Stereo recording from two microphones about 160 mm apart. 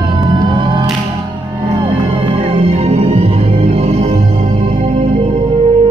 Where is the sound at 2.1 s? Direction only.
35° right (ahead or behind).